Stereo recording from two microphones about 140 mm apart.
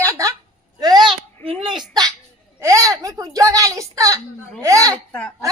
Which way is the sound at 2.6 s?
25° right (ahead or behind).